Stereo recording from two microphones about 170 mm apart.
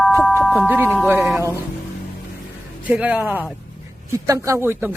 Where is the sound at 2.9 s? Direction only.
10° right (ahead or behind).